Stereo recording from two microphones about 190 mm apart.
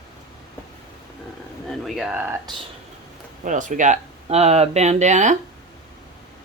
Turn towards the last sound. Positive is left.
turn(degrees=-40)  # may be behind; listen again after turning